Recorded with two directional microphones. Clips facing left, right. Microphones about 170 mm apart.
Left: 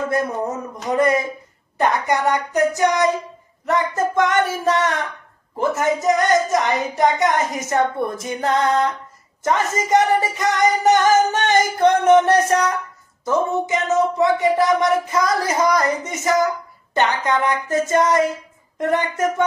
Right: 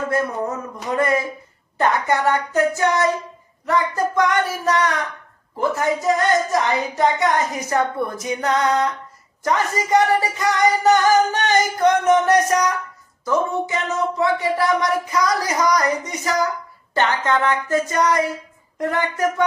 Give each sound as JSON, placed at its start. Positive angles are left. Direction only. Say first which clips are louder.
{"t": 0.9, "sound": "a woman's voice", "louder": "left 2 dB", "side_deg": 20}